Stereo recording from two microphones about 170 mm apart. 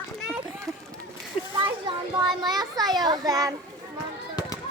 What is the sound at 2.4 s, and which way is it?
A child's voice, 25° right (ahead or behind).